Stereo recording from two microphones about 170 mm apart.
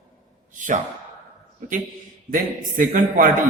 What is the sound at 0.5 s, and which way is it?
Speech, 50° right (ahead or behind).